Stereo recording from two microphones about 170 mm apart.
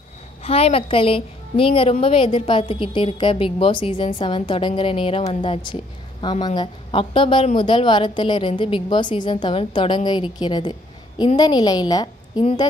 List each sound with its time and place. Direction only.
0.4 s a woman's voice: 35° left (ahead or behind)